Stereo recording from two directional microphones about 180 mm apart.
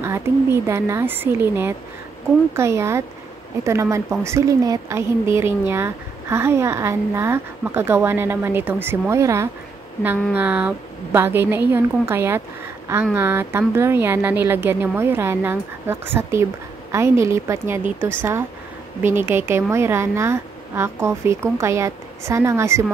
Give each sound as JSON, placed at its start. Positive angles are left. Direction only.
{"t": 0.0, "sound": "a woman's voice", "side_deg": -15}